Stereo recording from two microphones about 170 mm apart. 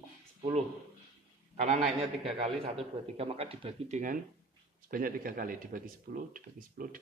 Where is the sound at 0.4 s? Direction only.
40° right (ahead or behind).